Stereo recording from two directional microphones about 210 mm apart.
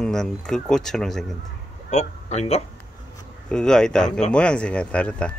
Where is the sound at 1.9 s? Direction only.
30° left (ahead or behind).